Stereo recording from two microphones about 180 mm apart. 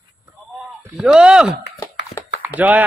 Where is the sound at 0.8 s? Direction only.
5° right (ahead or behind).